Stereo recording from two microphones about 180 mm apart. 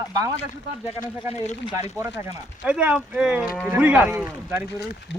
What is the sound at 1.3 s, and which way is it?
Speech, 35° left (ahead or behind).